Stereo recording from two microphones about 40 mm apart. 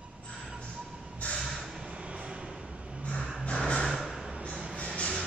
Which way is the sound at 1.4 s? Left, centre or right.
Centre.